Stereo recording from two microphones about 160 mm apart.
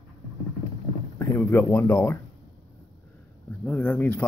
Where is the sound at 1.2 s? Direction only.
15° left (ahead or behind).